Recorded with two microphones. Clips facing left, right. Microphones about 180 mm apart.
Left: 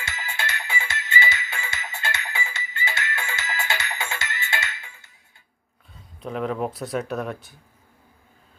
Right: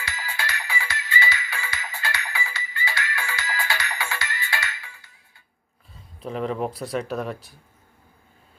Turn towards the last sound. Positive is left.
turn(degrees=0)  # may be behind; listen again after turning